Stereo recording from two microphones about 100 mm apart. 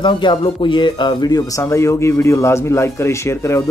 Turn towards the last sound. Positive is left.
turn(degrees=30)  # may be behind; listen again after turning